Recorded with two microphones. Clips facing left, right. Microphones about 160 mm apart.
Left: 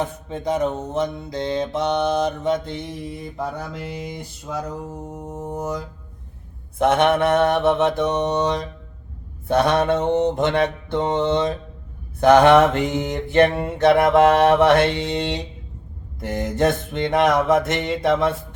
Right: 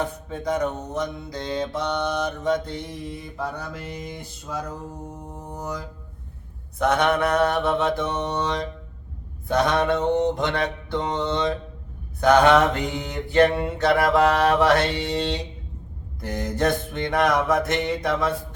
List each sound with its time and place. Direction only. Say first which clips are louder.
0.0 s mantra: left 2 dB; 20° left (ahead or behind)
9.6 s mantra: left 3 dB; 25° left (ahead or behind)